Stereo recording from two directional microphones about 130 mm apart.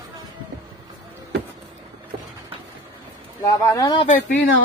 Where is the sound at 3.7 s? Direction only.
35° left (ahead or behind).